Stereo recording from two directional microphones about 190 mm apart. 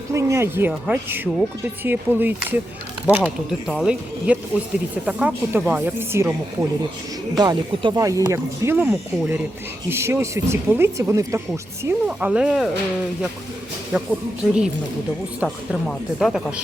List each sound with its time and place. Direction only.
0.1 s speech: 15° right (ahead or behind)
13.9 s speech: 10° right (ahead or behind)
15.4 s speech: 5° right (ahead or behind)